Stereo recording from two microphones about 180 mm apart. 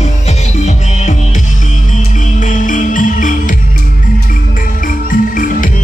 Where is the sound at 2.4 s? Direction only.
45° left (ahead or behind).